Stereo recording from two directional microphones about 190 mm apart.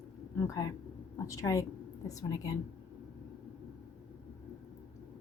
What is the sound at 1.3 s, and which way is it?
A woman's voice, 15° left (ahead or behind).